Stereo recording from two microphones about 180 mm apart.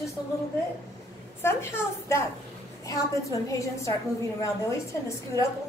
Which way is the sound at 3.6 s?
15° left (ahead or behind).